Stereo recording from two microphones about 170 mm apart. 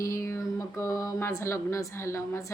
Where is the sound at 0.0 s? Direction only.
15° left (ahead or behind).